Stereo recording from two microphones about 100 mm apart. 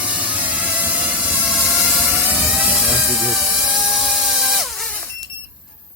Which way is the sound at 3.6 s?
10° right (ahead or behind).